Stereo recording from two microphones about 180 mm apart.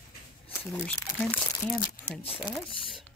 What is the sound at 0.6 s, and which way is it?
Speech, 10° left (ahead or behind).